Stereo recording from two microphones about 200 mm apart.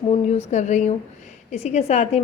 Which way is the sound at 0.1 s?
35° left (ahead or behind).